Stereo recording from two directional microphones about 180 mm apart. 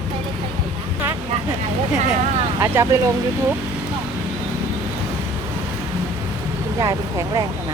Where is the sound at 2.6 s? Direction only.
15° right (ahead or behind).